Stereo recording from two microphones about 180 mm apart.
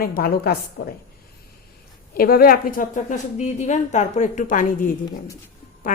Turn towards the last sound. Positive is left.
turn(degrees=45)  # may be behind; listen again after turning